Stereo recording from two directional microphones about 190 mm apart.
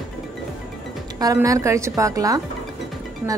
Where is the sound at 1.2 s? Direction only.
20° right (ahead or behind).